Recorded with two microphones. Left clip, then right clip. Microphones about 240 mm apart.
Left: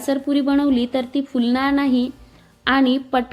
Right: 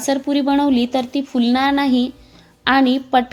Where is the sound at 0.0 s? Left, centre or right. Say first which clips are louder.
Right 2 dB; centre.